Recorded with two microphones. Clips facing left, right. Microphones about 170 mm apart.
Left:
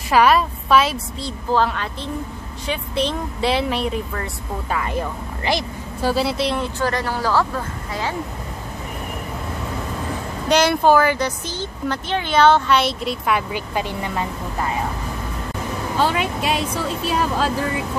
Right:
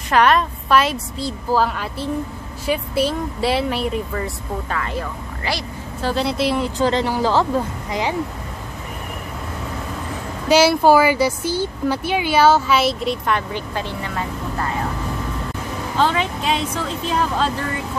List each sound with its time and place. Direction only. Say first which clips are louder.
0.1 s a woman's voice: left 1 dB; 5° left (ahead or behind)
4.6 s a woman's voice: left 4 dB; 15° left (ahead or behind); by 6.6 s centre (ahead or behind)
6.6 s a woman's voice: right 4 dB; 20° right (ahead or behind)
10.5 s speech: right 2 dB; 5° right (ahead or behind); by 14.2 s 15° left (ahead or behind)
16.0 s speech: right 1 dB; 10° left (ahead or behind)